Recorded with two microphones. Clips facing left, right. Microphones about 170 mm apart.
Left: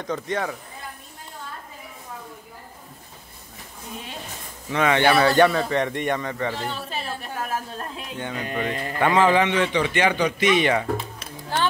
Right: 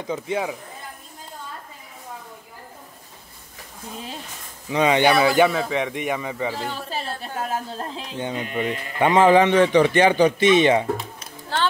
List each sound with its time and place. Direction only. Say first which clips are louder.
0.0 s speech: right 1 dB; 10° right (ahead or behind)
4.6 s speech: right 2 dB; 15° right (ahead or behind)
5.1 s a man's voice: even; 5° right (ahead or behind)
6.9 s a sound: right 2 dB; 35° right (ahead or behind)
8.5 s speech: right 1 dB; 40° left (ahead or behind)
9.0 s a man's voice: right 4 dB; 25° right (ahead or behind)